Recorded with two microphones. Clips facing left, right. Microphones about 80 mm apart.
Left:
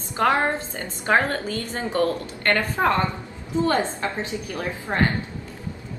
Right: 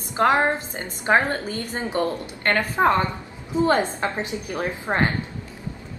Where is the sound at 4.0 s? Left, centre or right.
Right.